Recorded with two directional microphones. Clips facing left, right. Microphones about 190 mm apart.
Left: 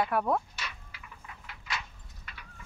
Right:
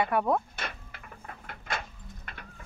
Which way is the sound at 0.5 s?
50° right (ahead or behind).